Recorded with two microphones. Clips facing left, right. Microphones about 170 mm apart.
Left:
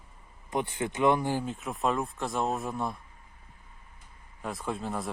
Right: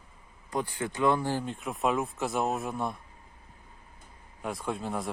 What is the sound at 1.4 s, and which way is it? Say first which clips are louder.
Speech: even; centre (ahead or behind).